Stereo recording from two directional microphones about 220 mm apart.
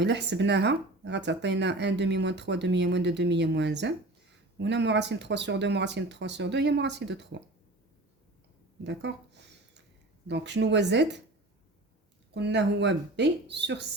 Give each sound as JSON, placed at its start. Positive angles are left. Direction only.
{"t": 0.0, "sound": "speech", "side_deg": -50}
{"t": 8.8, "sound": "a sound", "side_deg": -50}
{"t": 10.2, "sound": "speech", "side_deg": -50}
{"t": 12.3, "sound": "speech", "side_deg": -50}